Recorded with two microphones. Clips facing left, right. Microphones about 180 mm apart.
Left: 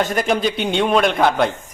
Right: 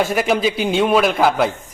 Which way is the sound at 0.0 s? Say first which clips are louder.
Right 1 dB; 5° right (ahead or behind).